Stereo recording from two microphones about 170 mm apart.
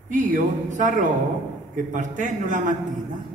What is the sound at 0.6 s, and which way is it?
Speech, 50° right (ahead or behind).